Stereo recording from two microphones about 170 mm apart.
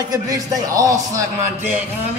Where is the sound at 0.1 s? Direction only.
20° right (ahead or behind).